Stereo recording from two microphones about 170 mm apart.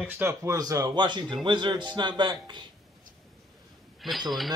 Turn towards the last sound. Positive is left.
turn(degrees=0)  # may be behind; listen again after turning